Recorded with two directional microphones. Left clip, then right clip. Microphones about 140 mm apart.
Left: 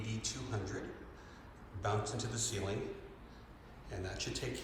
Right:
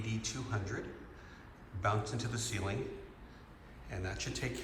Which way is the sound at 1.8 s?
20° left (ahead or behind).